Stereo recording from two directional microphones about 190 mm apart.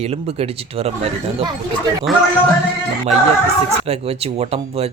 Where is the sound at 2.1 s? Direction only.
Centre (ahead or behind).